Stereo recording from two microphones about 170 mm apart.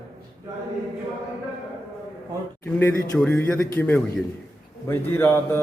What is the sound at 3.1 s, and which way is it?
Mantra, 10° left (ahead or behind).